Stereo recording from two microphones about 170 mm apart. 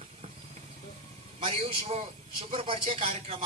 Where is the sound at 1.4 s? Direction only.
35° right (ahead or behind).